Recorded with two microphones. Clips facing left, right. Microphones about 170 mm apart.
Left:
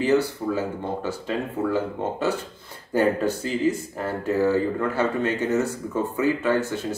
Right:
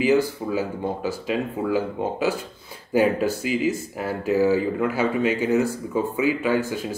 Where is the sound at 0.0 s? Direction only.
15° right (ahead or behind).